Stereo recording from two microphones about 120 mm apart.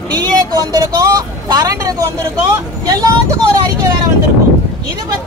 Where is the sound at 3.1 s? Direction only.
30° right (ahead or behind).